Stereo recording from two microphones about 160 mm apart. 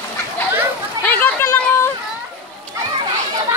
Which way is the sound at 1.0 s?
10° left (ahead or behind).